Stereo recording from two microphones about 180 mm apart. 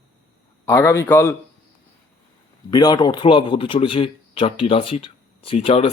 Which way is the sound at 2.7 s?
20° left (ahead or behind).